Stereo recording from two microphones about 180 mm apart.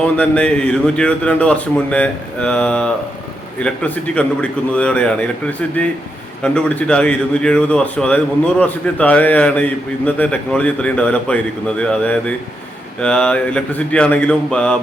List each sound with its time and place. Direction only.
0.2 s a man's voice: 5° left (ahead or behind)